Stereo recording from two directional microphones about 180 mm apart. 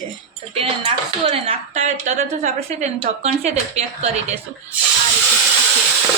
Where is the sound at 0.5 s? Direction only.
30° right (ahead or behind).